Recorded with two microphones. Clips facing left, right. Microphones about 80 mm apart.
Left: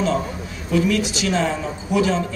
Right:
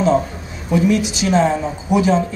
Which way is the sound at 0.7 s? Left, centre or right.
Right.